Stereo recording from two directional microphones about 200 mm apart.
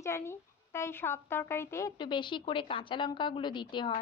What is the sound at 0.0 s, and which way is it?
A woman's voice, 15° left (ahead or behind).